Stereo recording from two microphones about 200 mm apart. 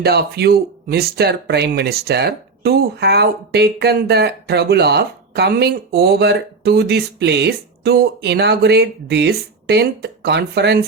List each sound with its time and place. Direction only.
0.0 s speech: 55° right (ahead or behind)